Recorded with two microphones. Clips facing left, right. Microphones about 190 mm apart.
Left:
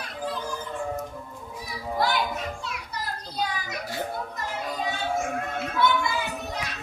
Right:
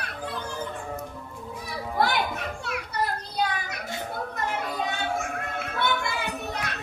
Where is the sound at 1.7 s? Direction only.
60° right (ahead or behind).